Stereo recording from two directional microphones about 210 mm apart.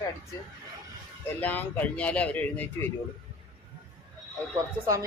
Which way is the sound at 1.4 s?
10° left (ahead or behind).